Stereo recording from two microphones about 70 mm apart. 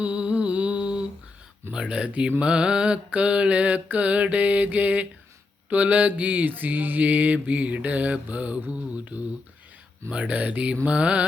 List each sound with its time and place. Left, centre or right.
0.0 s humming: centre
1.7 s speech: centre
2.4 s mantra: centre
10.8 s speech: centre